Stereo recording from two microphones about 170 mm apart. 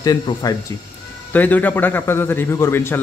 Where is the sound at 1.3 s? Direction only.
10° left (ahead or behind).